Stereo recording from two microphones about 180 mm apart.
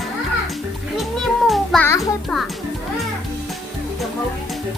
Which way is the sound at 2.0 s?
Centre (ahead or behind).